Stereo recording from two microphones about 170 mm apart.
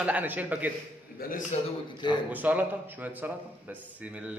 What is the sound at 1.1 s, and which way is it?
Speech, 50° left (ahead or behind).